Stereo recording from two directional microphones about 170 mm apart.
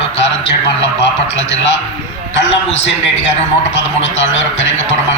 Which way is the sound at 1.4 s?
90° left.